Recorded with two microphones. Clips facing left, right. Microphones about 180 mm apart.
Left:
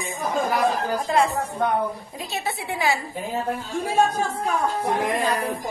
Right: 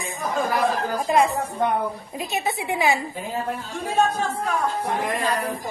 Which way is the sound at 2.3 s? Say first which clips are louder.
Right 3 dB; 20° right (ahead or behind).